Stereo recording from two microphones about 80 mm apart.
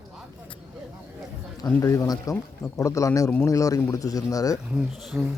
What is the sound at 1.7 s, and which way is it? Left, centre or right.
Speech, left.